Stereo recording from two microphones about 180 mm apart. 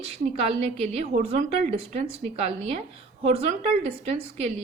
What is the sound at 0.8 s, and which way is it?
A woman's voice, 35° right (ahead or behind).